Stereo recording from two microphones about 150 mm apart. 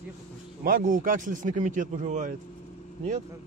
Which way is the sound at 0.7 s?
70° right (ahead or behind).